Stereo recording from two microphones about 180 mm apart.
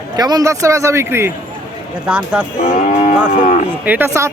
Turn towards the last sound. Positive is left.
turn(degrees=-15)  # may be behind; listen again after turning